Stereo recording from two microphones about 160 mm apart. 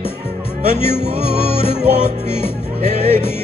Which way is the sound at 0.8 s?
35° left (ahead or behind).